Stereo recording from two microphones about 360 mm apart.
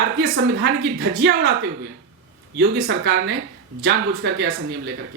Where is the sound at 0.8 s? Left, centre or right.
Right.